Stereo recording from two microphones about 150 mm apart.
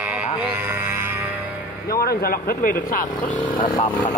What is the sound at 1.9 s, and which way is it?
Speech, 90° left.